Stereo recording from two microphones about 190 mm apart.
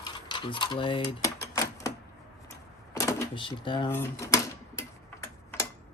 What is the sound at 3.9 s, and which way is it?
Tick-tock, 15° left (ahead or behind).